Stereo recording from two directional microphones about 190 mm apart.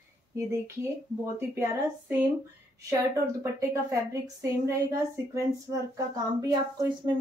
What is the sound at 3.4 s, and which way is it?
Speech, 15° right (ahead or behind).